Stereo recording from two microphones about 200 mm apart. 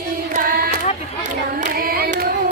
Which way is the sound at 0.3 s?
45° right (ahead or behind).